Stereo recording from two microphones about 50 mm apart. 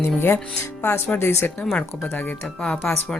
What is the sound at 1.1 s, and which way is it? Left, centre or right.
Speech, left.